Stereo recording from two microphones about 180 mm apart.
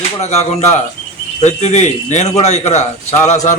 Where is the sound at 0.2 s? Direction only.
35° left (ahead or behind).